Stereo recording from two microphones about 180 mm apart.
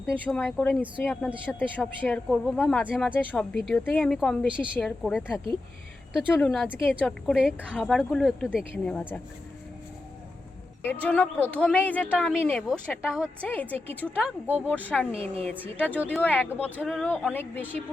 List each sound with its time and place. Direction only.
0.3 s speech: centre (ahead or behind)
10.8 s speech: 10° left (ahead or behind)
14.3 s speech: 10° right (ahead or behind)
14.7 s speech: 10° left (ahead or behind)
15.1 s a woman's voice: 30° right (ahead or behind)
15.8 s speech: 10° left (ahead or behind)